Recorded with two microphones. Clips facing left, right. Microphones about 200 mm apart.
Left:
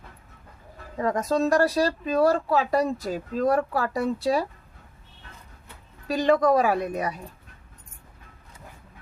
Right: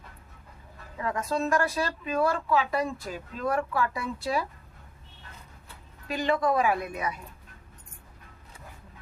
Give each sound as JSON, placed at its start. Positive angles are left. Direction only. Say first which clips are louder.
{"t": 0.9, "sound": "speech", "louder": "left 6 dB", "side_deg": 40}
{"t": 6.1, "sound": "speech", "louder": "left 6 dB", "side_deg": 40}